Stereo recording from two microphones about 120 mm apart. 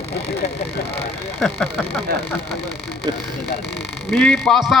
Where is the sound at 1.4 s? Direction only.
5° left (ahead or behind).